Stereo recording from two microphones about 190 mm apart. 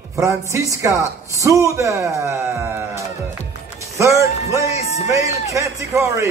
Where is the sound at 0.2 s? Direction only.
15° right (ahead or behind).